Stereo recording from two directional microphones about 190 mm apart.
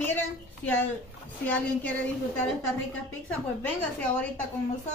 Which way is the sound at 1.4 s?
5° left (ahead or behind).